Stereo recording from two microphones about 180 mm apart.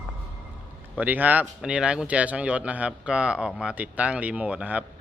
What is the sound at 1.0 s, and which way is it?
Speech, 10° right (ahead or behind).